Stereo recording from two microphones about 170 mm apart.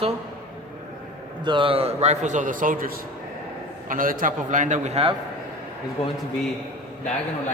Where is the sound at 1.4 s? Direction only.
30° right (ahead or behind).